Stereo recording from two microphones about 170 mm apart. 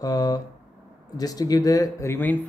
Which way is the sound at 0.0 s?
20° left (ahead or behind).